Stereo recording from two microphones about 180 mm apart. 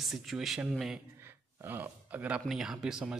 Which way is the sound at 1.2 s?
10° right (ahead or behind).